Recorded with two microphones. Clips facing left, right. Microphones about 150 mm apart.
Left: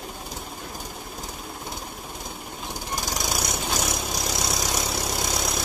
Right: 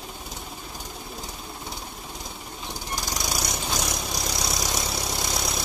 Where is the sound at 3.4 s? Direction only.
Centre (ahead or behind).